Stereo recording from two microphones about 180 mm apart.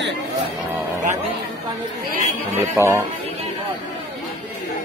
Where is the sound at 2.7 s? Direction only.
15° right (ahead or behind).